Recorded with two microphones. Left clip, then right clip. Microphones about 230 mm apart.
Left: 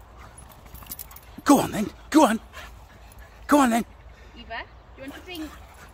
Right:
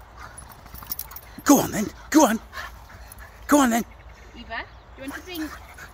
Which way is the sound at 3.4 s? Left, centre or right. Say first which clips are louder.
Even; centre.